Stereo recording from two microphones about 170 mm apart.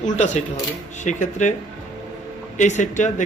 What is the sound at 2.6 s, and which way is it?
Speech, 45° left (ahead or behind).